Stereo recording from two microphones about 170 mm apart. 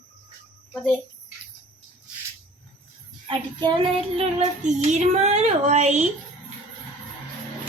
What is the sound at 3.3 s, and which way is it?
Child singing, 30° right (ahead or behind).